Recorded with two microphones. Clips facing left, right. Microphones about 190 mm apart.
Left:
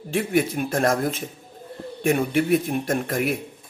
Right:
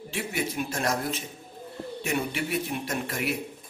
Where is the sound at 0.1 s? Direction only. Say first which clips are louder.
Left 9 dB; 50° left (ahead or behind).